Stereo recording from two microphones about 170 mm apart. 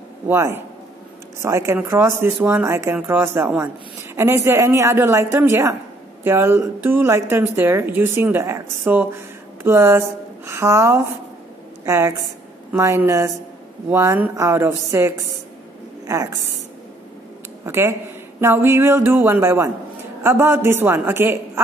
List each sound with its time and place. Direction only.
0.3 s a woman's voice: 15° right (ahead or behind)
17.6 s a woman's voice: 15° right (ahead or behind)